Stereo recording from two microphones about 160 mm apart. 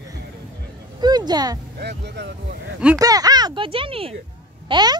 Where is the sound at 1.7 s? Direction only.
90° right.